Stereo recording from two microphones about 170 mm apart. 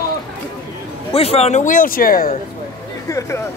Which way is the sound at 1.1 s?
35° left (ahead or behind).